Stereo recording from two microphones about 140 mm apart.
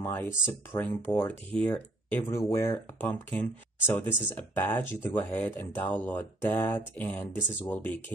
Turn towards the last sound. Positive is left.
turn(degrees=15)  # may be behind; listen again after turning